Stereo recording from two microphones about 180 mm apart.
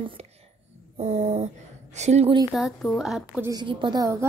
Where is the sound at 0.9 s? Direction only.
35° right (ahead or behind).